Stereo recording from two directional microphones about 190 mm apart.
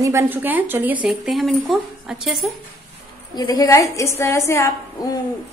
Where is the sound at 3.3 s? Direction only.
20° left (ahead or behind).